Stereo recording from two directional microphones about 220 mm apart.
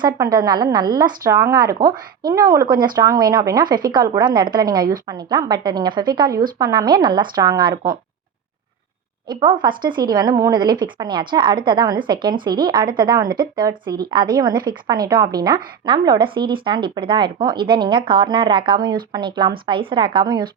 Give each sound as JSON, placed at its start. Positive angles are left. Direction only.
{"t": 0.0, "sound": "a woman's voice", "side_deg": -15}
{"t": 9.3, "sound": "a woman's voice", "side_deg": -20}